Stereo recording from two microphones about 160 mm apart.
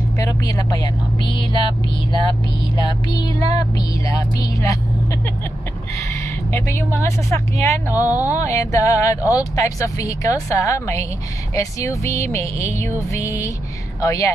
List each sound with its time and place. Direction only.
0.2 s vehicle: 25° left (ahead or behind)
1.2 s speech: 30° left (ahead or behind)
3.2 s speech: 25° left (ahead or behind)
6.5 s speech: 15° left (ahead or behind)
7.9 s speech: 10° right (ahead or behind)
8.3 s speech: 20° left (ahead or behind)